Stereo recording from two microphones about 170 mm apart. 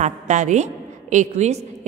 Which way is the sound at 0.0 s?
45° right (ahead or behind).